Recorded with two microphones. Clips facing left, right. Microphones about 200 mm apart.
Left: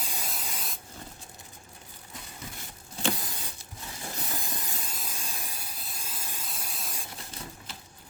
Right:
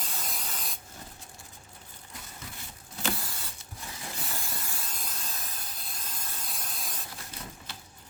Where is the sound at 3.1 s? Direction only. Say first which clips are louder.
Left 3 dB; 20° left (ahead or behind).